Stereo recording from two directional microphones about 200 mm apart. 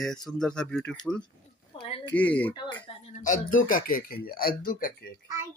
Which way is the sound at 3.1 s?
40° left (ahead or behind).